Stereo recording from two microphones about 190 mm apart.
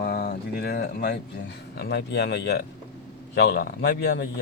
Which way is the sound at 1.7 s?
60° left (ahead or behind).